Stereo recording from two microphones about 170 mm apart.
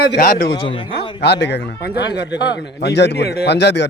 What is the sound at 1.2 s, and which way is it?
A man's voice, 80° left.